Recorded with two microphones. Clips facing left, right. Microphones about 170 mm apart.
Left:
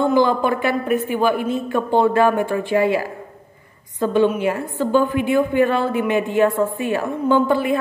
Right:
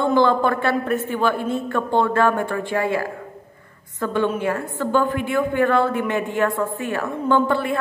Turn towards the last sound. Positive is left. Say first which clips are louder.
# left 2 dB
turn(degrees=15)  # may be behind; listen again after turning